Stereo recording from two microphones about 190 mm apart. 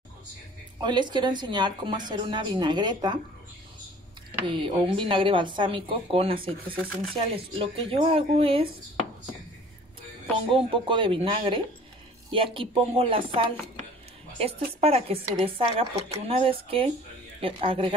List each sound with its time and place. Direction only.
0.7 s speech: 25° right (ahead or behind)
4.5 s speech: 25° right (ahead or behind)
10.5 s speech: 30° right (ahead or behind)